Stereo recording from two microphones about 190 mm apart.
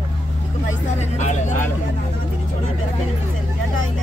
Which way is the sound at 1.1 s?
40° left (ahead or behind).